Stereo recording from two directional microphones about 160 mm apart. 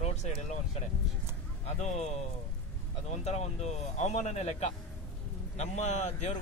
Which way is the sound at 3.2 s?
45° left (ahead or behind).